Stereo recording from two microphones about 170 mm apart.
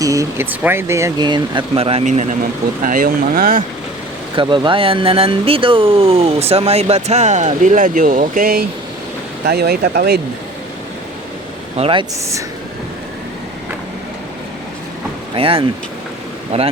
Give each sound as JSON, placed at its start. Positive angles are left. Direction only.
{"t": 0.0, "sound": "speech", "side_deg": -20}
{"t": 2.8, "sound": "speech", "side_deg": -55}
{"t": 4.4, "sound": "speech", "side_deg": -30}
{"t": 9.5, "sound": "speech", "side_deg": -70}
{"t": 11.8, "sound": "speech", "side_deg": -30}
{"t": 15.4, "sound": "speech", "side_deg": -35}